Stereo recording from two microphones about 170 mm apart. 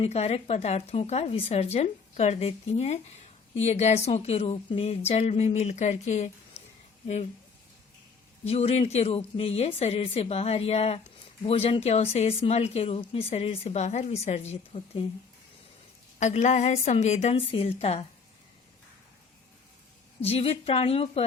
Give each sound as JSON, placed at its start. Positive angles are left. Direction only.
{"t": 0.0, "sound": "speech", "side_deg": 40}
{"t": 8.4, "sound": "speech", "side_deg": 35}
{"t": 16.2, "sound": "speech", "side_deg": 45}
{"t": 20.2, "sound": "speech", "side_deg": 35}